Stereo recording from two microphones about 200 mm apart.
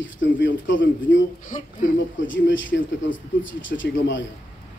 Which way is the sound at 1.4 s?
40° left (ahead or behind).